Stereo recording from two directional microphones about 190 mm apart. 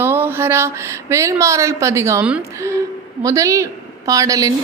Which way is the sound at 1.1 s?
15° right (ahead or behind).